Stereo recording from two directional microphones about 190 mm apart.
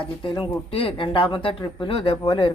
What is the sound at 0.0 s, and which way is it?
Speech, 25° left (ahead or behind).